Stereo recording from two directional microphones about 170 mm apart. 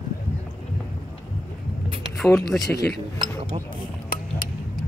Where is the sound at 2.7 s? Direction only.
75° left (ahead or behind).